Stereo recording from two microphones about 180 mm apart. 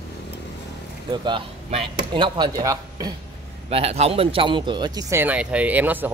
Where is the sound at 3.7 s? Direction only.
35° right (ahead or behind).